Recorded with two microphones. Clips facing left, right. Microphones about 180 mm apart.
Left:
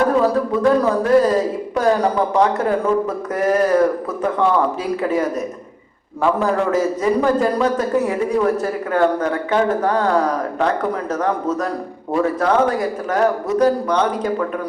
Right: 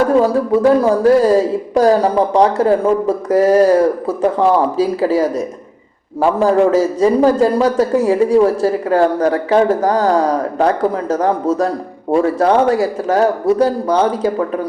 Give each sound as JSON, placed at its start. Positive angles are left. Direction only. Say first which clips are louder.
{"t": 0.2, "sound": "a man's voice", "louder": "right 4 dB", "side_deg": -25}
{"t": 6.4, "sound": "a man's voice", "louder": "right 9 dB", "side_deg": -30}